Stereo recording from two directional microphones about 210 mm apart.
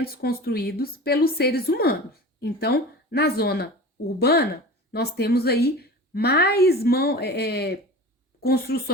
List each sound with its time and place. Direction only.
0.0 s a woman's voice: 45° left (ahead or behind)